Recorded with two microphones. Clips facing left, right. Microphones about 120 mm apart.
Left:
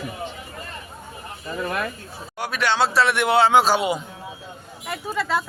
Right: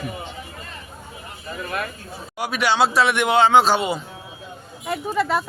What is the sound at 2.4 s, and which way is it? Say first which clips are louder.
A man's voice: right 2 dB; centre (ahead or behind).